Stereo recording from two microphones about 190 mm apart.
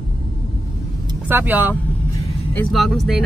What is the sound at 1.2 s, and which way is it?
Speech, 10° right (ahead or behind).